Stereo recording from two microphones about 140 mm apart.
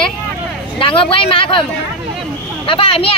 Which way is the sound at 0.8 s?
40° left (ahead or behind).